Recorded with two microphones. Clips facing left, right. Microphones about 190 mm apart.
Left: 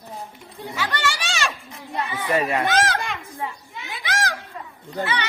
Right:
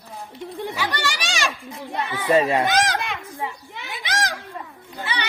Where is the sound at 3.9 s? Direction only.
20° right (ahead or behind).